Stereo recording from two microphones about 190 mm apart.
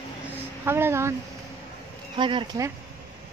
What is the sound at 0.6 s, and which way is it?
Speech, 10° right (ahead or behind).